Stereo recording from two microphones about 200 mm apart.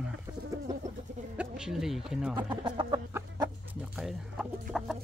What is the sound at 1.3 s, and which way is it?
Speech, 5° right (ahead or behind).